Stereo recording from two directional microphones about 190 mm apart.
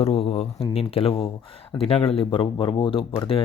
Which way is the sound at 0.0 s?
30° left (ahead or behind).